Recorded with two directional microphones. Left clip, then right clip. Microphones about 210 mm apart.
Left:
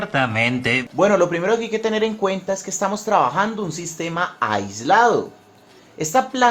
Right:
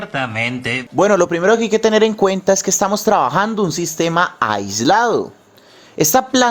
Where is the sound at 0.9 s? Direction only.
50° right (ahead or behind).